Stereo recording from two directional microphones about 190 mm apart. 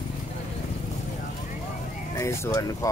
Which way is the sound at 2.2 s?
15° left (ahead or behind).